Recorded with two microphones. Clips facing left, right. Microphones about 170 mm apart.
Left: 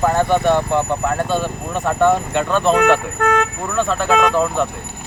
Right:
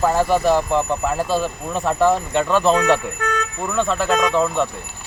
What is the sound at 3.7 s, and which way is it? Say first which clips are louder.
Speech: left 1 dB; centre (ahead or behind).